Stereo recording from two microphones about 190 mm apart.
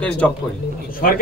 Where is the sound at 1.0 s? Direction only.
45° left (ahead or behind).